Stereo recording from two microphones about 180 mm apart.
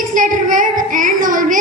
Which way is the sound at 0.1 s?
45° right (ahead or behind).